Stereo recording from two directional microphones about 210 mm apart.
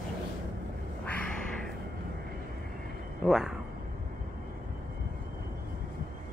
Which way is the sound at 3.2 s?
Centre (ahead or behind).